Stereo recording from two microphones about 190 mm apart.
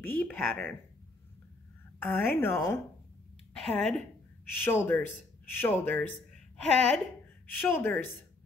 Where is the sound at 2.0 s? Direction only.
10° left (ahead or behind).